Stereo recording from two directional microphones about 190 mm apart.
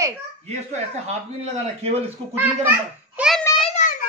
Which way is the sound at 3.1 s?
Centre (ahead or behind).